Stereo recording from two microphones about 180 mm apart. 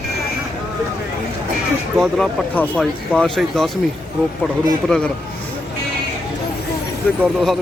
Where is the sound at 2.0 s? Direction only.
Centre (ahead or behind).